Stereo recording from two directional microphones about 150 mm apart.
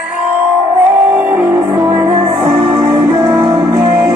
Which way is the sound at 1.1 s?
10° right (ahead or behind).